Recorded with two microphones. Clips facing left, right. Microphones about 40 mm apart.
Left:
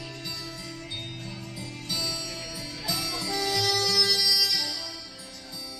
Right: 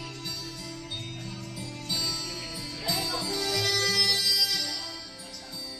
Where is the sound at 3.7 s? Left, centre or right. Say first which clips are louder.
Left 1 dB; right.